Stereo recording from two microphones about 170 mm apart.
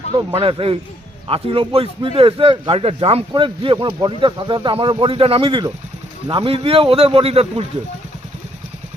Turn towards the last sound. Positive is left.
turn(degrees=-35)  # may be behind; listen again after turning